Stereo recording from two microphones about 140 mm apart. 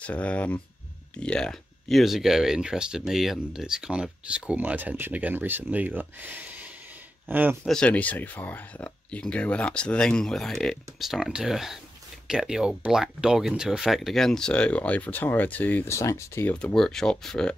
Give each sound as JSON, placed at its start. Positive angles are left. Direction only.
{"t": 0.0, "sound": "speech", "side_deg": 10}
{"t": 7.6, "sound": "speech", "side_deg": 5}
{"t": 16.5, "sound": "speech", "side_deg": 5}